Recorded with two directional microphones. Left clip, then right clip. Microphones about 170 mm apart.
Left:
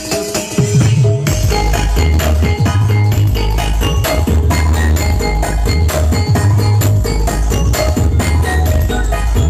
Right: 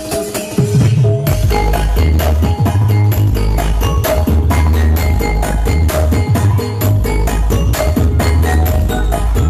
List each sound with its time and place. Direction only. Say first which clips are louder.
0.6 s music: even; 35° right (ahead or behind)